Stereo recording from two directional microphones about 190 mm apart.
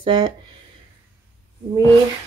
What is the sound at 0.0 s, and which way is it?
Speech, 25° right (ahead or behind).